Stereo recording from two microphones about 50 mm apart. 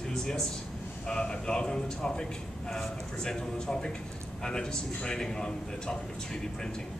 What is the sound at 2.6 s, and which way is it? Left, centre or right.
A man's voice, centre.